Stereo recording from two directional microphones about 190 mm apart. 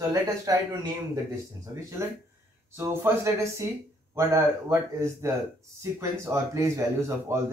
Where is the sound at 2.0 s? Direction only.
15° right (ahead or behind).